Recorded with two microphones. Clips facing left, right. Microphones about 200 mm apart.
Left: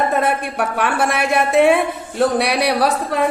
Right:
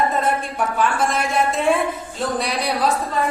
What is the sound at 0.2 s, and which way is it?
A woman's voice, 70° left (ahead or behind).